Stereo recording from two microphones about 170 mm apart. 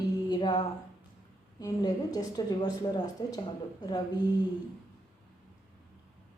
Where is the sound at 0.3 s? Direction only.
25° left (ahead or behind).